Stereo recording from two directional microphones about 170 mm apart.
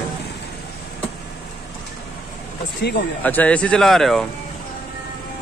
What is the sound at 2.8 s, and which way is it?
Speech, 90° left.